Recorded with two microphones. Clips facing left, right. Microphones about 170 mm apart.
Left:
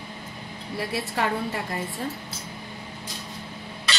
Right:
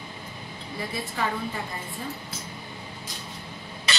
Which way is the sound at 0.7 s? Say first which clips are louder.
Left 4 dB; 70° left (ahead or behind).